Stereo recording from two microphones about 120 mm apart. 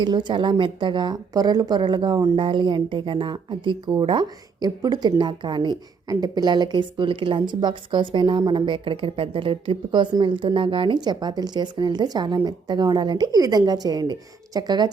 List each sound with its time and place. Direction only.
0.0 s a woman's voice: 40° right (ahead or behind)